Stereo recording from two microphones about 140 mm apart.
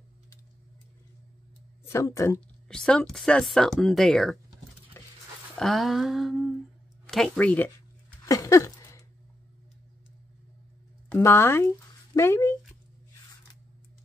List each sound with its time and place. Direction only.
1.9 s speech: 20° left (ahead or behind)
2.7 s speech: 5° left (ahead or behind)
5.0 s dog: 20° left (ahead or behind)
5.6 s speech: centre (ahead or behind)
8.2 s a sound: 25° left (ahead or behind)
11.1 s speech: 15° left (ahead or behind)